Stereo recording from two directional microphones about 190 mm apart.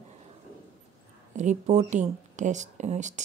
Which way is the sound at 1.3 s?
40° right (ahead or behind).